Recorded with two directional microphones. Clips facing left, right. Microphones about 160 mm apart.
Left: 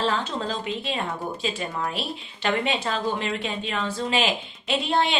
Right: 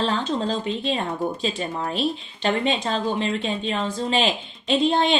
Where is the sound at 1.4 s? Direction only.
30° right (ahead or behind).